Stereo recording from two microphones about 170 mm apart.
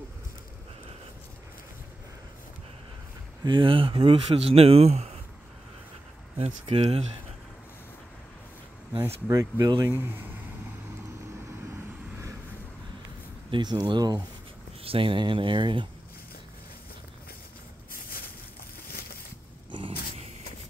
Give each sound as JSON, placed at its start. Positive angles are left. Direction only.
{"t": 3.4, "sound": "speech", "side_deg": -30}
{"t": 6.3, "sound": "speech", "side_deg": -35}
{"t": 8.9, "sound": "speech", "side_deg": -15}
{"t": 13.5, "sound": "speech", "side_deg": -25}
{"t": 19.7, "sound": "a sound", "side_deg": -30}